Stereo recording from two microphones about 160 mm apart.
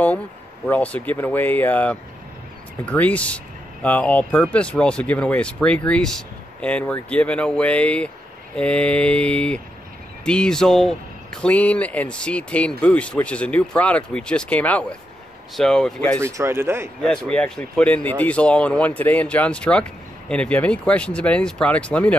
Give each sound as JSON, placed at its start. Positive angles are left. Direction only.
{"t": 0.7, "sound": "speech", "side_deg": 10}
{"t": 16.2, "sound": "speech", "side_deg": -20}
{"t": 17.0, "sound": "speech", "side_deg": 5}